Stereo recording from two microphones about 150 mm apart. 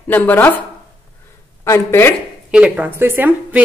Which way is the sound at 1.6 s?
15° left (ahead or behind).